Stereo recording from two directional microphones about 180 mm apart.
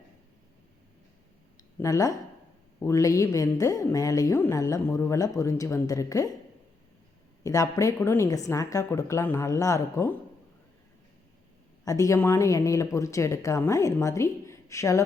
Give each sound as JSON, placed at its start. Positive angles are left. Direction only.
{"t": 1.8, "sound": "a woman's voice", "side_deg": 20}
{"t": 7.4, "sound": "a woman's voice", "side_deg": 20}
{"t": 11.9, "sound": "a woman's voice", "side_deg": 20}